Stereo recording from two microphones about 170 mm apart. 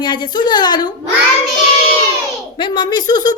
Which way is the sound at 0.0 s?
25° left (ahead or behind).